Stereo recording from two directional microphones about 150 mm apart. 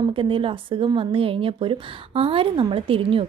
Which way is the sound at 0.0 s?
35° right (ahead or behind).